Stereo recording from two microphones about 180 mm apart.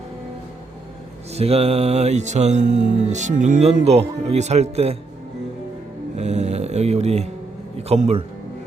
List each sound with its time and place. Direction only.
1.3 s music: 35° right (ahead or behind)
6.1 s music: 35° right (ahead or behind)